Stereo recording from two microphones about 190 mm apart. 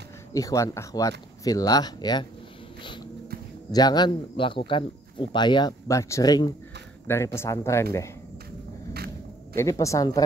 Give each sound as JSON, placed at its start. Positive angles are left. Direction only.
{"t": 0.3, "sound": "speech", "side_deg": 15}
{"t": 3.7, "sound": "speech", "side_deg": 20}
{"t": 8.9, "sound": "a sound", "side_deg": -55}
{"t": 9.6, "sound": "speech", "side_deg": 15}